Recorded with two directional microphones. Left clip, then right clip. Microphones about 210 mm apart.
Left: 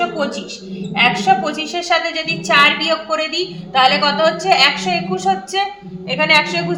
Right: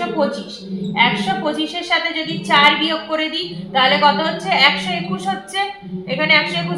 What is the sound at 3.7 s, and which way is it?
Speech, 55° left (ahead or behind).